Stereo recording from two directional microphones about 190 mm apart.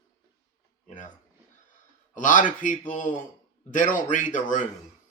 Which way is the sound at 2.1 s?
45° left (ahead or behind).